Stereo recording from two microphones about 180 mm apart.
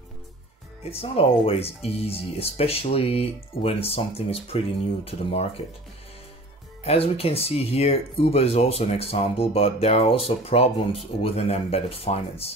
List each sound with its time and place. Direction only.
0.8 s speech: 35° left (ahead or behind)
6.8 s speech: 35° left (ahead or behind)